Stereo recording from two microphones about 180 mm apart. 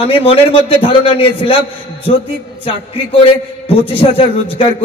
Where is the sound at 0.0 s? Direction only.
30° left (ahead or behind).